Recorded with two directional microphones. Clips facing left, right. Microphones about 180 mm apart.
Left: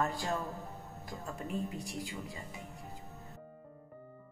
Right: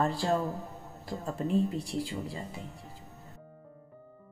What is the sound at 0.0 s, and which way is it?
Speech, 30° right (ahead or behind).